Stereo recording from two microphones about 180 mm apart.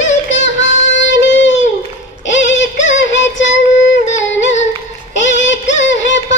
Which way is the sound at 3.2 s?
90° left.